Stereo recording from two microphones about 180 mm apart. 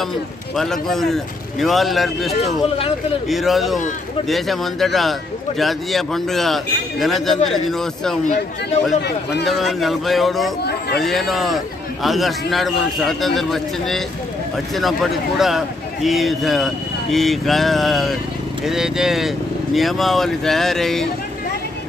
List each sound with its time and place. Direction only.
0.6 s a man's voice: centre (ahead or behind)
9.0 s a man's voice: 70° left (ahead or behind)
9.5 s a man's voice: centre (ahead or behind)
10.6 s a man's voice: 60° left (ahead or behind)
11.0 s a man's voice: centre (ahead or behind)